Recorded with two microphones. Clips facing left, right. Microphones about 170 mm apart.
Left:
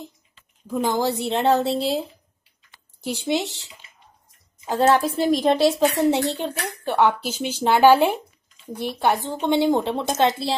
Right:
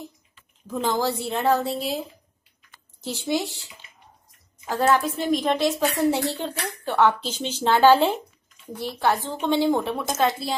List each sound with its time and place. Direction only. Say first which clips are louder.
0.7 s a woman's voice: left 2 dB; 15° left (ahead or behind)
3.0 s speech: left 2 dB; 15° left (ahead or behind)
4.6 s a woman's voice: left 3 dB; 20° left (ahead or behind)
6.0 s a woman's voice: left 2 dB; 20° left (ahead or behind)